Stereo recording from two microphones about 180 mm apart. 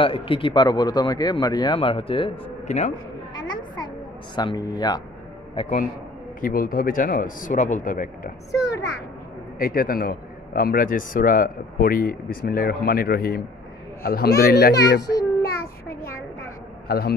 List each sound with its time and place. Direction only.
0.0 s speech: 30° left (ahead or behind)
2.7 s a man's voice: 40° left (ahead or behind)
3.4 s a sound: 25° left (ahead or behind)
4.4 s a man's voice: 25° left (ahead or behind)
6.4 s speech: 55° left (ahead or behind)
8.5 s a child's voice: 20° left (ahead or behind)
9.6 s a man's voice: 55° left (ahead or behind)
16.8 s a man's voice: 60° left (ahead or behind)